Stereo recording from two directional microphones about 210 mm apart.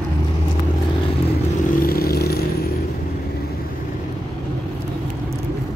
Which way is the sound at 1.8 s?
45° left (ahead or behind).